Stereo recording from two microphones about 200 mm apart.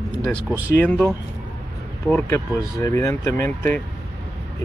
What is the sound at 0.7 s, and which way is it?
Speech, 10° left (ahead or behind).